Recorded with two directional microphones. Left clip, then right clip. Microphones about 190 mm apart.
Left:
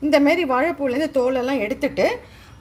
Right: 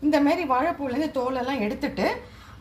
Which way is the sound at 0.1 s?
45° left (ahead or behind).